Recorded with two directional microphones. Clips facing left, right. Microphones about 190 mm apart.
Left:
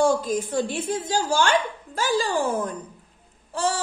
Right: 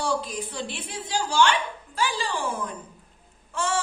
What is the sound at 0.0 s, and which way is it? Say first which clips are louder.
A woman's voice: left 7 dB; 45° left (ahead or behind).